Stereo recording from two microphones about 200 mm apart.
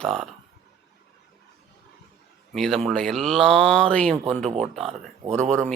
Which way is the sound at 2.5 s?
Centre (ahead or behind).